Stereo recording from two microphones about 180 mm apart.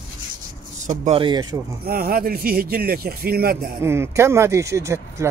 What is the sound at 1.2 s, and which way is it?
Speech, 25° right (ahead or behind).